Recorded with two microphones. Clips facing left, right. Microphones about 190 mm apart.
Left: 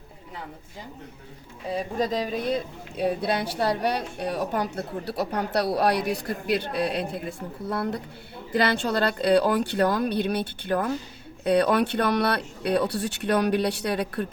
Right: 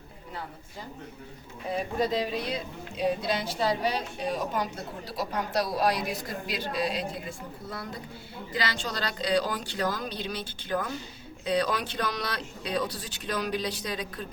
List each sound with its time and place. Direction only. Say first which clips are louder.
2.0 s speech: left 1 dB; 45° left (ahead or behind)
3.0 s a woman's voice: left 3 dB; 60° left (ahead or behind)